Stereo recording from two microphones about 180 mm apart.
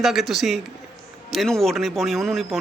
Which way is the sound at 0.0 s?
Centre (ahead or behind).